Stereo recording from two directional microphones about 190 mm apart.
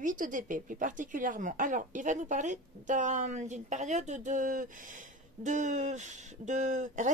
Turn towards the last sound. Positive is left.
turn(degrees=-40)  # may be behind; listen again after turning